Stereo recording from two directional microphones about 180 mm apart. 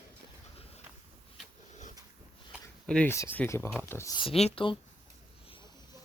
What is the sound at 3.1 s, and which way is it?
Speech, 10° left (ahead or behind).